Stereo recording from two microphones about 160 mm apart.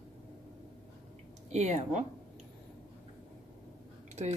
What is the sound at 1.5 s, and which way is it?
Speech, 45° right (ahead or behind).